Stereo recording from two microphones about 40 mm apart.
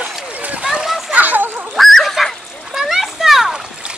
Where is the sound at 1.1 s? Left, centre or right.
Right.